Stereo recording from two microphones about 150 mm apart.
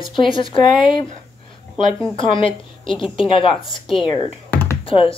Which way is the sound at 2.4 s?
35° left (ahead or behind).